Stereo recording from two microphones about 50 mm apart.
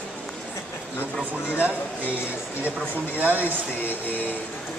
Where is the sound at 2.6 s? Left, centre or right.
Right.